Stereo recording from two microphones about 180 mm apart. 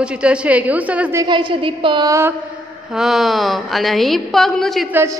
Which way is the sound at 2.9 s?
Centre (ahead or behind).